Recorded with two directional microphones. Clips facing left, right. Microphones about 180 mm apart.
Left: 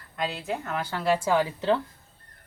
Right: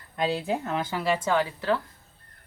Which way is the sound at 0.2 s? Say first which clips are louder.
Right 4 dB; 30° right (ahead or behind).